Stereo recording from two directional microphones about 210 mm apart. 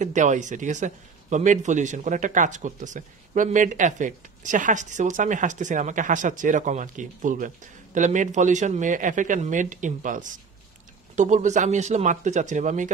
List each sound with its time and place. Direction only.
0.0 s a man's voice: 35° right (ahead or behind)